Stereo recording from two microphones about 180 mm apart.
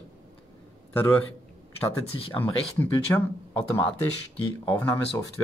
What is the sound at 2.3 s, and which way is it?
Speech, 10° left (ahead or behind).